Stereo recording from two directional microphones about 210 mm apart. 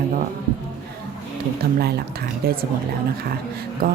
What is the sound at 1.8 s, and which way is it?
Speech, 50° right (ahead or behind).